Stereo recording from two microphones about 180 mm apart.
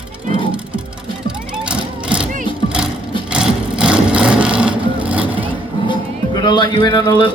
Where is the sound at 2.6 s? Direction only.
25° left (ahead or behind).